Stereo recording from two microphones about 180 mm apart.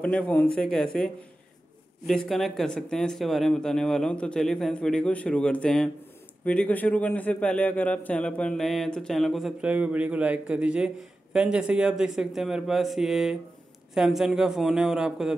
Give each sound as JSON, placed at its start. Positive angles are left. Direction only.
{"t": 0.0, "sound": "a man's voice", "side_deg": 5}
{"t": 2.0, "sound": "a man's voice", "side_deg": 0}